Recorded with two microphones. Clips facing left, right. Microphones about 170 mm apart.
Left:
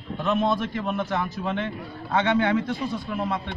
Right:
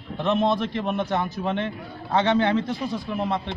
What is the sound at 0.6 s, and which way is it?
A man's voice, 25° right (ahead or behind).